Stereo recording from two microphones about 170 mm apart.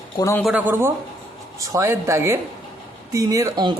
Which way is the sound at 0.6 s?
15° right (ahead or behind).